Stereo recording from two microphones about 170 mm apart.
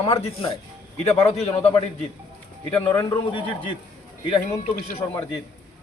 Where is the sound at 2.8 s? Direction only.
30° left (ahead or behind).